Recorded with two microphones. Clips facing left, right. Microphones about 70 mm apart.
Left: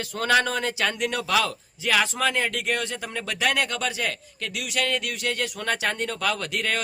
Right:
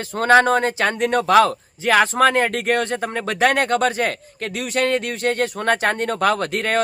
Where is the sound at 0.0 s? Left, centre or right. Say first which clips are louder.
Right 8 dB; right.